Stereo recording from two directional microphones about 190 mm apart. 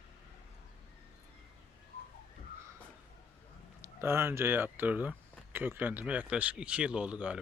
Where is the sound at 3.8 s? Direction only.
15° right (ahead or behind).